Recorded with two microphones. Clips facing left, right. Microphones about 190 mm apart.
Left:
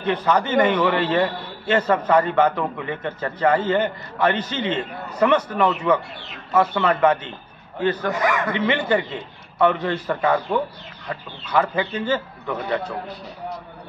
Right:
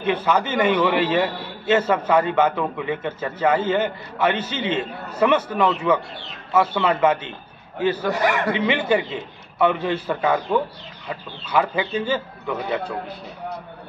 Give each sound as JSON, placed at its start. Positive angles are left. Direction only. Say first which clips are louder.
{"t": 0.0, "sound": "a man's voice", "louder": "even", "side_deg": -10}
{"t": 8.3, "sound": "speech", "louder": "right 1 dB", "side_deg": -30}
{"t": 8.5, "sound": "a man's voice", "louder": "even", "side_deg": -10}